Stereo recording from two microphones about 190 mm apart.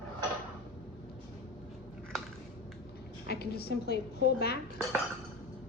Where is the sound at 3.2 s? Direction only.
60° left (ahead or behind).